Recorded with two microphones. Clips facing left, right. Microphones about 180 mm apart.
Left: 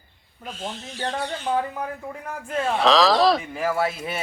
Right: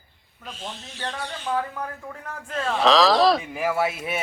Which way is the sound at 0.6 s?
40° left (ahead or behind).